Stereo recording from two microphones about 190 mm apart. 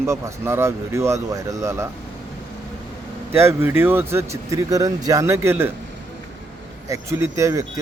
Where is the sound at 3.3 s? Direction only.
15° right (ahead or behind).